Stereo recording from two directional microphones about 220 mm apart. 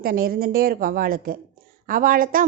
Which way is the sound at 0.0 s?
40° right (ahead or behind).